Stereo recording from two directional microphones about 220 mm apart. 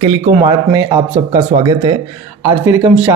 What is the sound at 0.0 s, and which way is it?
Speech, 20° right (ahead or behind).